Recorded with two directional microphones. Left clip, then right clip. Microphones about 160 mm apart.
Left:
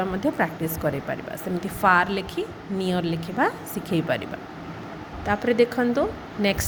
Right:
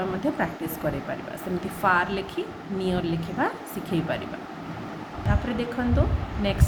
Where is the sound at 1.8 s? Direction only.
50° left (ahead or behind).